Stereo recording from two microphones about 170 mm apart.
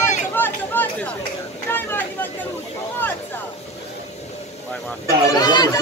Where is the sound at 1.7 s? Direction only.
10° left (ahead or behind).